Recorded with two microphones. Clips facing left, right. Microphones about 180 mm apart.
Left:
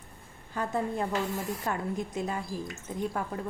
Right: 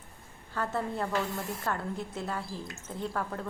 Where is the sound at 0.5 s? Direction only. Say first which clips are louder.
Left 2 dB; 15° left (ahead or behind).